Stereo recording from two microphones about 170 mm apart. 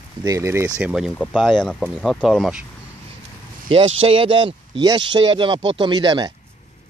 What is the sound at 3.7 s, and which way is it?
Speech, 30° right (ahead or behind).